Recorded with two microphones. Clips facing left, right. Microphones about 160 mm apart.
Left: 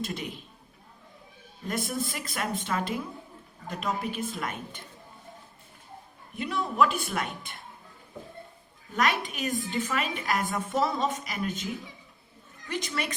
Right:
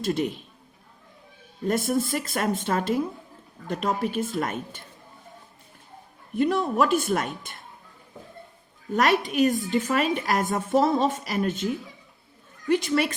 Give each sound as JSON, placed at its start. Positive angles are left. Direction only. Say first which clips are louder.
{"t": 1.6, "sound": "a woman's voice", "louder": "right 7 dB", "side_deg": -50}
{"t": 6.3, "sound": "a woman's voice", "louder": "right 7 dB", "side_deg": -45}
{"t": 9.0, "sound": "a woman's voice", "louder": "right 7 dB", "side_deg": -45}
{"t": 12.6, "sound": "a woman's voice", "louder": "right 10 dB", "side_deg": -50}